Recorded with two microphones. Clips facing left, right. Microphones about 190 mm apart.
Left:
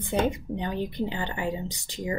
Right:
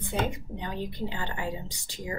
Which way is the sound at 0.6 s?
20° left (ahead or behind).